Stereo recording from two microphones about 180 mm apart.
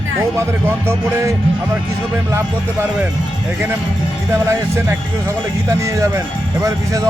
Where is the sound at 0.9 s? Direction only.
15° right (ahead or behind).